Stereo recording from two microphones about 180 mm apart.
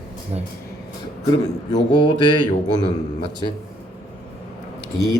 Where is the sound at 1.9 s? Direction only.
25° left (ahead or behind).